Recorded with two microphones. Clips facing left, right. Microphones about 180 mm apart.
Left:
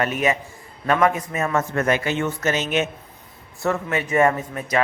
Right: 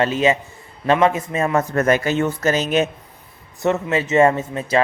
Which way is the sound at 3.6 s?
25° right (ahead or behind).